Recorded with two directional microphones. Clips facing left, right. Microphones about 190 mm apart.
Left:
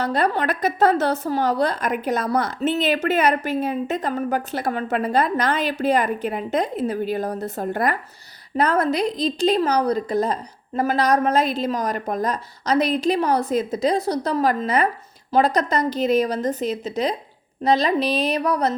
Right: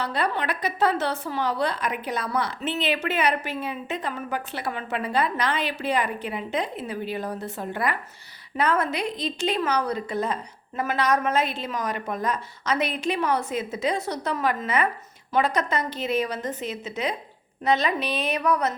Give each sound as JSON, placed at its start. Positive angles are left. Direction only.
{"t": 0.0, "sound": "a woman's voice", "side_deg": 45}